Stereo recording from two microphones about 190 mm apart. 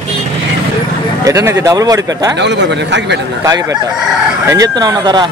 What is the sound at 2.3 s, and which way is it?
Speech, 65° right (ahead or behind).